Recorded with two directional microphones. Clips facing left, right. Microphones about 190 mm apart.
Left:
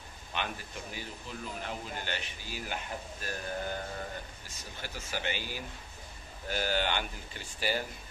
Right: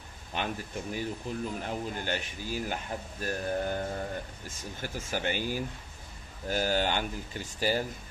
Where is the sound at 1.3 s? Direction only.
50° right (ahead or behind).